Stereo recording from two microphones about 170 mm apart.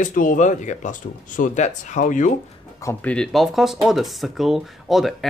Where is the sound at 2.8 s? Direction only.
10° left (ahead or behind).